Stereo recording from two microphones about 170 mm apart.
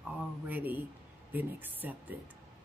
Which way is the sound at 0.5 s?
10° right (ahead or behind).